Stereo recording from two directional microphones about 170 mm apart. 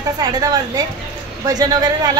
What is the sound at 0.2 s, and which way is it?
A woman's voice, 20° right (ahead or behind).